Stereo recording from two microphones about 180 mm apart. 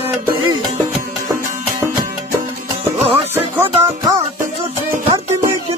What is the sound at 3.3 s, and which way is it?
Music, 10° right (ahead or behind).